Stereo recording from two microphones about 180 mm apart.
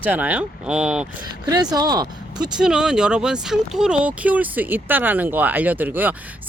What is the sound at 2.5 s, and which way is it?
Speech, 5° right (ahead or behind).